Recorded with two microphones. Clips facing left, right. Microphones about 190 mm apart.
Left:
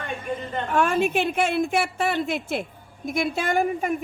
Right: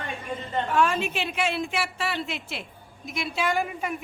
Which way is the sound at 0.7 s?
50° left (ahead or behind).